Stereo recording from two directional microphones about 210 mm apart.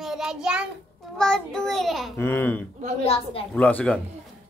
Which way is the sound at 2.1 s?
10° left (ahead or behind).